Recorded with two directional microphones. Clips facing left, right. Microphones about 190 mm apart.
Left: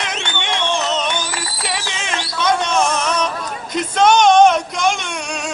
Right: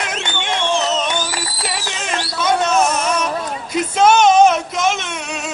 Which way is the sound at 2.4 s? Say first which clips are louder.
Right 1 dB; 5° right (ahead or behind).